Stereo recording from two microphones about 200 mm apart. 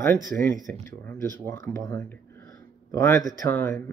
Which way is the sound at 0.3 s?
5° left (ahead or behind).